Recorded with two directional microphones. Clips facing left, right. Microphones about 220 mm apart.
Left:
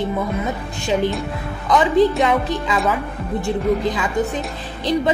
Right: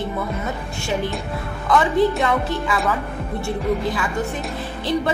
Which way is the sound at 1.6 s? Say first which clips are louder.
Left 2 dB; 15° left (ahead or behind).